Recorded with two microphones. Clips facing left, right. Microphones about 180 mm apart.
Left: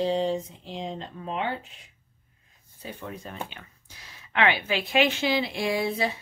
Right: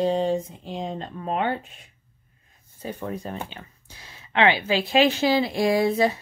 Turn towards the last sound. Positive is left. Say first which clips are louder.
# right 6 dB
turn(degrees=-45)  # may be behind; listen again after turning